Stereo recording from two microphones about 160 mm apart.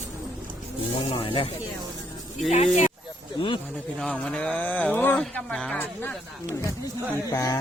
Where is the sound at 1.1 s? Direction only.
30° left (ahead or behind).